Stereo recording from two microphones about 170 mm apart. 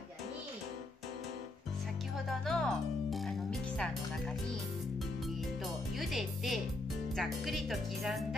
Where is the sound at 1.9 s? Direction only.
Centre (ahead or behind).